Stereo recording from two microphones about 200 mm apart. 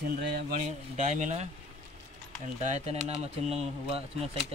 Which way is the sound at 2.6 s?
35° right (ahead or behind).